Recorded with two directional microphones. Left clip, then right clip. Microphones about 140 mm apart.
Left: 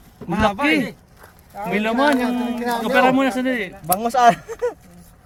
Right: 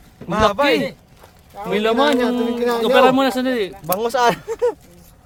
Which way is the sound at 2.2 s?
45° right (ahead or behind).